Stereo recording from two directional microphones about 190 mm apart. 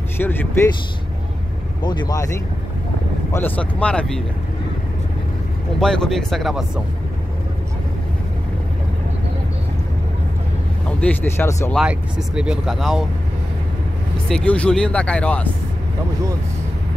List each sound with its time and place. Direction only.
0.2 s speech: 10° left (ahead or behind)
1.8 s speech: 25° left (ahead or behind)
3.3 s speech: 10° left (ahead or behind)
5.8 s speech: 5° left (ahead or behind)
11.0 s speech: 10° left (ahead or behind)
11.7 s speech: 5° right (ahead or behind)
14.3 s speech: 5° left (ahead or behind)